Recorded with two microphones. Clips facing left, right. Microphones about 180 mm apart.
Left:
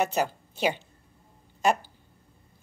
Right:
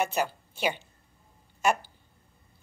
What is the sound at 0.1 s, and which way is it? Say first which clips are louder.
A woman's voice: left 2 dB; 35° left (ahead or behind).